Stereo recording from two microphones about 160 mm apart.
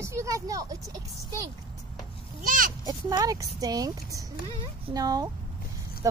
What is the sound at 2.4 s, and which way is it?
Speech, 60° right (ahead or behind).